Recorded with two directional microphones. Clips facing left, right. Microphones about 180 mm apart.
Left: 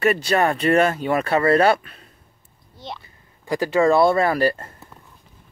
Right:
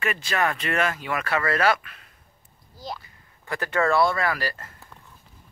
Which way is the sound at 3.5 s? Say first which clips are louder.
Left 6 dB; 15° left (ahead or behind).